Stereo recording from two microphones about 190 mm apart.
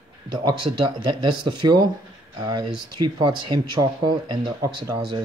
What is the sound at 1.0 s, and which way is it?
Speech, 25° right (ahead or behind).